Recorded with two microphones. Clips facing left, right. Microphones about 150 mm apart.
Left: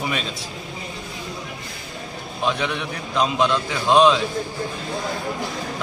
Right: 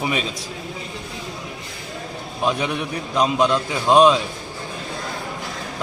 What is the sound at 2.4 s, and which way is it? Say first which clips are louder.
A man's voice: right 2 dB; 10° right (ahead or behind).